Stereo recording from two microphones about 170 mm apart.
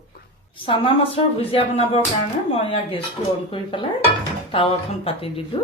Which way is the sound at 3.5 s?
30° left (ahead or behind).